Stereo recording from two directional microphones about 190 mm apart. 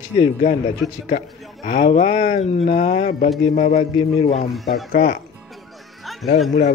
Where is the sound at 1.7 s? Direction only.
35° left (ahead or behind).